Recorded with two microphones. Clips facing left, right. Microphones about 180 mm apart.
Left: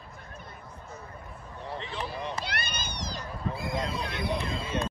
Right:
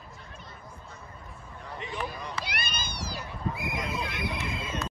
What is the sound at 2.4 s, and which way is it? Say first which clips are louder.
Cat: left 1 dB; 10° right (ahead or behind).